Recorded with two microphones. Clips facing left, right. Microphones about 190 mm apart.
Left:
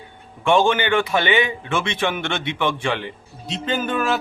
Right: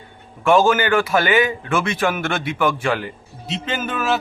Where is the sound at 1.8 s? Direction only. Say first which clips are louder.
Right 2 dB; 25° left (ahead or behind).